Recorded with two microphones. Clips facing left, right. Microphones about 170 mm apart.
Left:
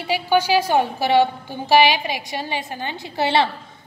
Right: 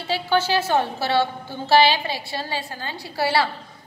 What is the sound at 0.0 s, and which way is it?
A woman's voice, 15° left (ahead or behind).